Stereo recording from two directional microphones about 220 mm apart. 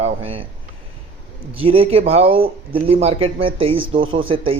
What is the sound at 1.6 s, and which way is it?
A man's voice, 25° right (ahead or behind).